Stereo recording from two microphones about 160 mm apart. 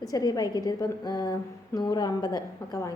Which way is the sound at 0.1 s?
25° left (ahead or behind).